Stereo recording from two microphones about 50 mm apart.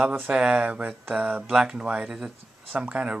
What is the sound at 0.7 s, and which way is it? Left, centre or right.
Speech, right.